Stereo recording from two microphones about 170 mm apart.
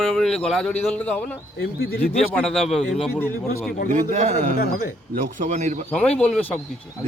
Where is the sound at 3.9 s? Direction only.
50° right (ahead or behind).